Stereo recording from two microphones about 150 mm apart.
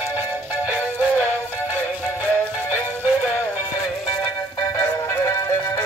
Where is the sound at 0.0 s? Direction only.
15° right (ahead or behind).